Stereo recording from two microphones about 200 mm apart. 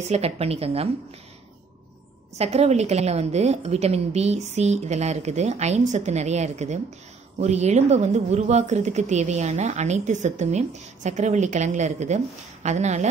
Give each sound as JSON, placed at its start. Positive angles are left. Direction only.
{"t": 0.0, "sound": "speech", "side_deg": -30}
{"t": 2.3, "sound": "speech", "side_deg": -30}